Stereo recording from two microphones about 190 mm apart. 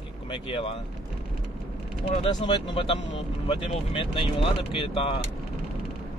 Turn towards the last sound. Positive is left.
turn(degrees=30)  # may be behind; listen again after turning